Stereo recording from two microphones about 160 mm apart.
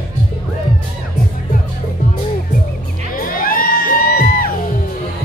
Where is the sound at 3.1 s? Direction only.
60° left (ahead or behind).